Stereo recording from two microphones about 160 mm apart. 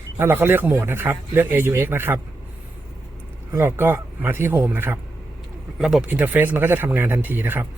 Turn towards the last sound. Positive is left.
turn(degrees=-15)  # may be behind; listen again after turning